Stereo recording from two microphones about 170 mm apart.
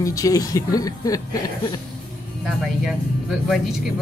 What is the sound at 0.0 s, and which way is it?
Speech, 20° left (ahead or behind).